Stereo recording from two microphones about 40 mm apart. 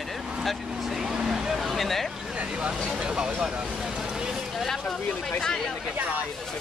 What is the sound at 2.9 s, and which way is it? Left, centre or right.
Speech, centre.